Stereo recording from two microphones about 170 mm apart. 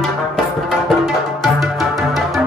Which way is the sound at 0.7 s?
Centre (ahead or behind).